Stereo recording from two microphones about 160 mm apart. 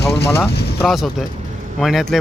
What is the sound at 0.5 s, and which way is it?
Vehicle, 90° left.